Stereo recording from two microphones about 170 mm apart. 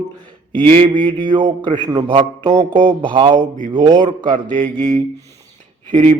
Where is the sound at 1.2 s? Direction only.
30° right (ahead or behind).